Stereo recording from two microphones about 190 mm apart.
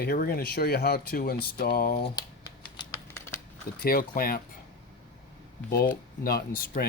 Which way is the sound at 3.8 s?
50° left (ahead or behind).